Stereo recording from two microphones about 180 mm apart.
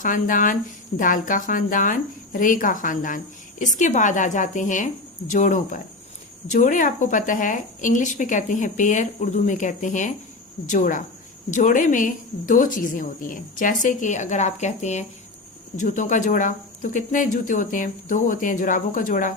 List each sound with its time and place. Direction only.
0.0 s speech: 50° left (ahead or behind)